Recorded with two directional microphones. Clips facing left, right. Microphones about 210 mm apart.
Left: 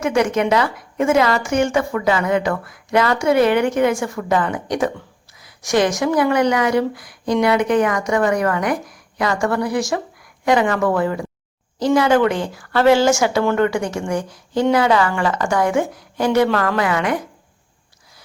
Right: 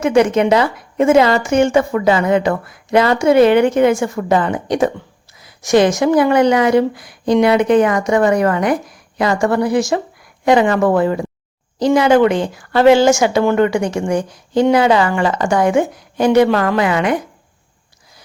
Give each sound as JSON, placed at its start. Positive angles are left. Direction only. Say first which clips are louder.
{"t": 0.0, "sound": "speech", "louder": "right 5 dB", "side_deg": -25}